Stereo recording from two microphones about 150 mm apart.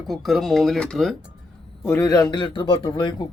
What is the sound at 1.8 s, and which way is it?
A man's voice, 20° left (ahead or behind).